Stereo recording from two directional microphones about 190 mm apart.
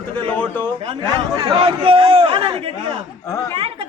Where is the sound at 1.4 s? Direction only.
30° right (ahead or behind).